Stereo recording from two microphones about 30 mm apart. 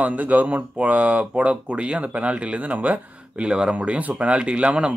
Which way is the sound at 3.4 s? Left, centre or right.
Right.